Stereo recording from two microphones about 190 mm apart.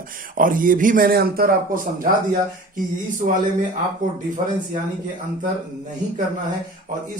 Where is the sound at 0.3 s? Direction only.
45° right (ahead or behind).